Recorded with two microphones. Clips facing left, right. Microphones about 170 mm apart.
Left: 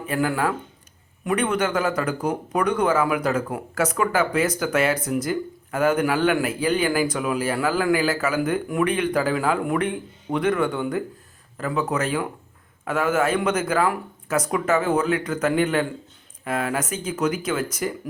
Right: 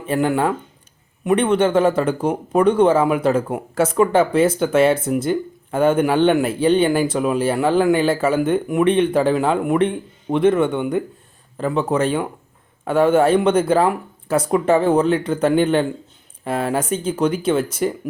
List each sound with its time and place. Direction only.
0.0 s speech: 25° right (ahead or behind)